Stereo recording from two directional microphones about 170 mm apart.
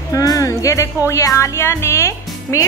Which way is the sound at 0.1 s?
20° left (ahead or behind).